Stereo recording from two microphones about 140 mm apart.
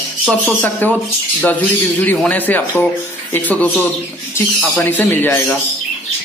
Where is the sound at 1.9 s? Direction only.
10° left (ahead or behind).